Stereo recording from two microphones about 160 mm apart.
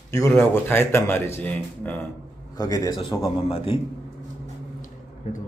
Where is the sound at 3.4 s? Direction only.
35° left (ahead or behind).